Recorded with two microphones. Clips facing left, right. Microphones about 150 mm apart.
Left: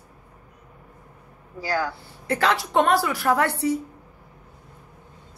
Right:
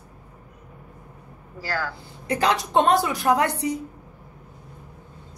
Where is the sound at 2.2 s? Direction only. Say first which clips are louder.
Even; 15° right (ahead or behind).